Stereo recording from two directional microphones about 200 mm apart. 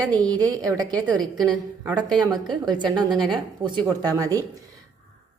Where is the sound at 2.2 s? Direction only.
20° right (ahead or behind).